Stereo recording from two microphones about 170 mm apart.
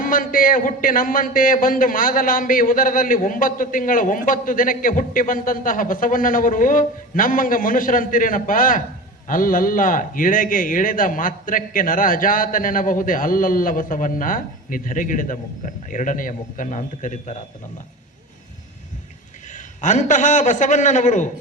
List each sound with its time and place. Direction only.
0.0 s a man's voice: 55° left (ahead or behind)
19.5 s a man's voice: 45° left (ahead or behind)